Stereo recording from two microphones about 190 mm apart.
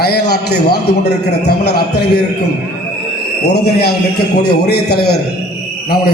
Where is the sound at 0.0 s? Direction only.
60° left (ahead or behind).